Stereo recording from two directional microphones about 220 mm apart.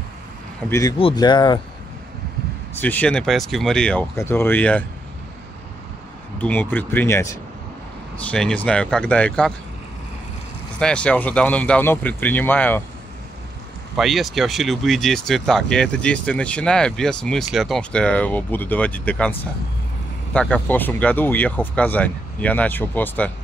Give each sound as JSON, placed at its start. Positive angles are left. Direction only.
{"t": 0.7, "sound": "speech", "side_deg": 15}
{"t": 2.8, "sound": "speech", "side_deg": 5}
{"t": 6.3, "sound": "speech", "side_deg": 5}
{"t": 10.8, "sound": "speech", "side_deg": 5}
{"t": 13.9, "sound": "speech", "side_deg": 0}
{"t": 20.3, "sound": "speech", "side_deg": 5}